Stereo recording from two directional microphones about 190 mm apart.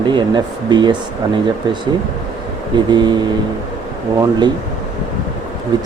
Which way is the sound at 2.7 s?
25° right (ahead or behind).